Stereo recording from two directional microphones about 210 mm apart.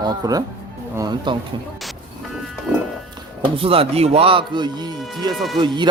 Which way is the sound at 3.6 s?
25° right (ahead or behind).